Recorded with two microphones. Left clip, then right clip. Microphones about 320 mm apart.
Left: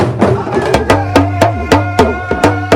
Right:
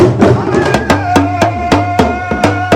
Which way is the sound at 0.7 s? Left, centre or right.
Left.